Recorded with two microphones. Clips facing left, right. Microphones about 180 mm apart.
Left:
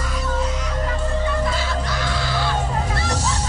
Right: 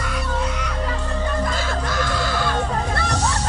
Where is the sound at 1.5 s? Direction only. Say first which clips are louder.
Even; 50° right (ahead or behind).